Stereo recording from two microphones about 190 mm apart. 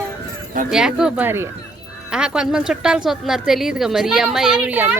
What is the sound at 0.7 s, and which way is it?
A woman's voice, 5° right (ahead or behind).